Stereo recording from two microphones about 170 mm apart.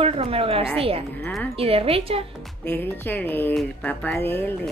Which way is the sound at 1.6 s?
35° right (ahead or behind).